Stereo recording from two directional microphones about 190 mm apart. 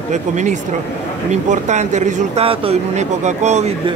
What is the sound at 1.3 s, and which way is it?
Speech, 40° right (ahead or behind).